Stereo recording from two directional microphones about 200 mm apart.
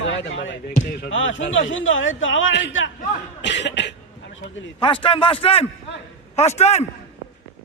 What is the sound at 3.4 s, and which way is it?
Cough, 60° left (ahead or behind).